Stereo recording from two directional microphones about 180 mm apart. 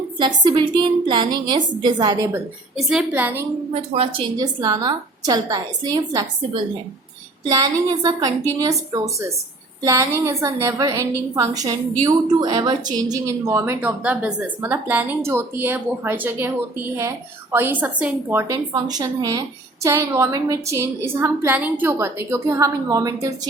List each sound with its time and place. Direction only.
0.2 s a woman's voice: 25° right (ahead or behind)
2.7 s a woman's voice: 5° right (ahead or behind)
3.8 s a woman's voice: 35° right (ahead or behind)
4.6 s a woman's voice: 20° right (ahead or behind)